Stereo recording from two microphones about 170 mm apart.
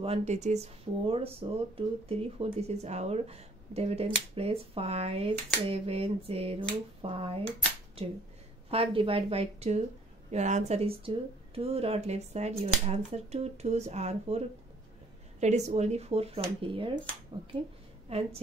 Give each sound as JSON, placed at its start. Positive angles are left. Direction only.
{"t": 0.0, "sound": "speech", "side_deg": -40}
{"t": 15.4, "sound": "speech", "side_deg": -40}
{"t": 18.1, "sound": "a woman's voice", "side_deg": -35}